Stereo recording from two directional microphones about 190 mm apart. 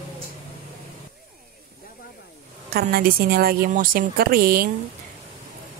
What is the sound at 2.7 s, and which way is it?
Speech, 50° right (ahead or behind).